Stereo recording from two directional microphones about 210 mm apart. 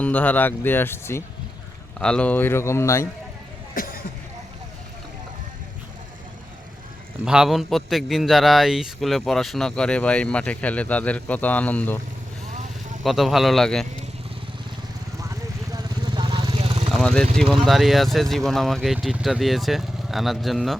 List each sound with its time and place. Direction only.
0.0 s speech: 10° left (ahead or behind)
3.8 s a sound: 40° left (ahead or behind)
7.3 s a man's voice: centre (ahead or behind)
13.0 s a man's voice: centre (ahead or behind)
15.2 s vehicle: 15° right (ahead or behind)
16.9 s a man's voice: centre (ahead or behind)